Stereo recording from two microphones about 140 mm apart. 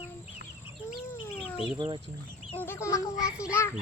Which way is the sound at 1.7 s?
35° right (ahead or behind).